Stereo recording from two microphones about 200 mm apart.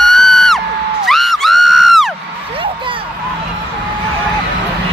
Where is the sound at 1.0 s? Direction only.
Centre (ahead or behind).